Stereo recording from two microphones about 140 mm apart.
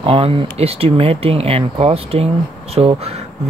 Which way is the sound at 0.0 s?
40° right (ahead or behind).